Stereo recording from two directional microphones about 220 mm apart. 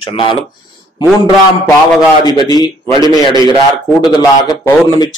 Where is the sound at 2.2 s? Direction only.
20° left (ahead or behind).